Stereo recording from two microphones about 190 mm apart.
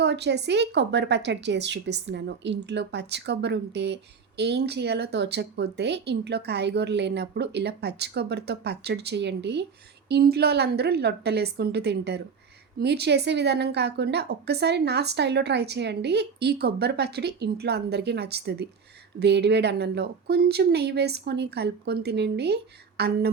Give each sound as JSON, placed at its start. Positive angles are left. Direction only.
{"t": 0.0, "sound": "a woman's voice", "side_deg": -65}